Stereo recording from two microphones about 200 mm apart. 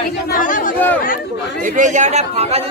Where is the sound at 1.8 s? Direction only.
40° right (ahead or behind).